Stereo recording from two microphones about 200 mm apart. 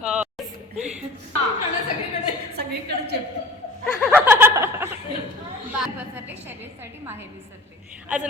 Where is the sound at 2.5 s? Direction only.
55° right (ahead or behind).